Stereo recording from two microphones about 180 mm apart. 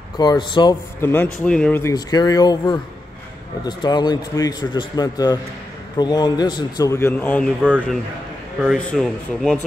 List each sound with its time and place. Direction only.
0.2 s speech: 25° left (ahead or behind)
1.0 s speech: 10° left (ahead or behind)
8.6 s speech: 5° left (ahead or behind)